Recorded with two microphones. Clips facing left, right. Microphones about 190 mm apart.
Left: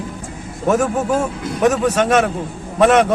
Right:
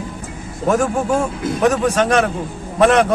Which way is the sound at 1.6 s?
5° left (ahead or behind).